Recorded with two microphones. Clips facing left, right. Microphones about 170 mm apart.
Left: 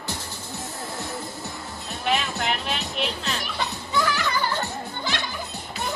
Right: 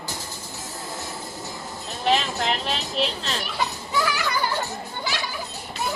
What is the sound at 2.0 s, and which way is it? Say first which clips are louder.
Speech: right 3 dB; 30° right (ahead or behind).